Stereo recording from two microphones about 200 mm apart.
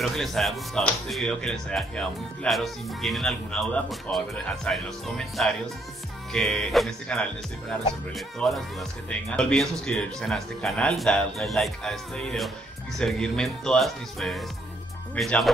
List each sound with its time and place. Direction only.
0.0 s speech: centre (ahead or behind)
8.4 s speech: centre (ahead or behind)